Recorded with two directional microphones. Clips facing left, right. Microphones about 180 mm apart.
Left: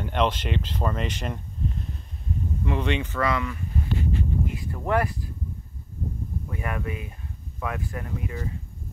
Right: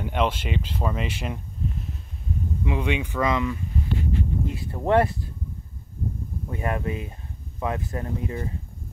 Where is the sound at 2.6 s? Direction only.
10° right (ahead or behind); by 5.3 s 25° right (ahead or behind).